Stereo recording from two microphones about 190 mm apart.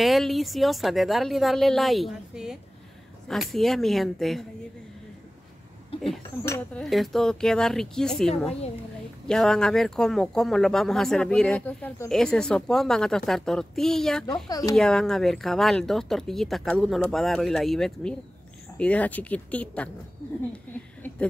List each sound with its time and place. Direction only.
0.0 s speech: centre (ahead or behind)
5.9 s speech: 30° left (ahead or behind)
6.4 s speech: 15° left (ahead or behind)
6.8 s speech: centre (ahead or behind)
9.3 s speech: 5° left (ahead or behind)